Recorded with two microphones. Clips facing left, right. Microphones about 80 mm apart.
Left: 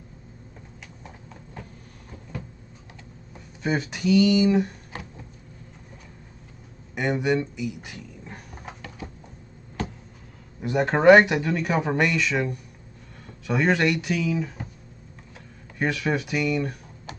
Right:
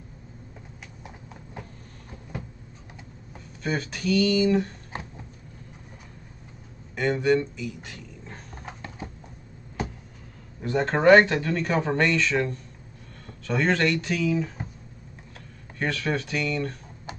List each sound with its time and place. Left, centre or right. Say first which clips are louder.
1.0 s a sound: right 1 dB; centre
3.6 s speech: left 3 dB; centre
7.0 s speech: right 1 dB; centre
10.6 s speech: left 2 dB; centre
15.8 s speech: left 2 dB; centre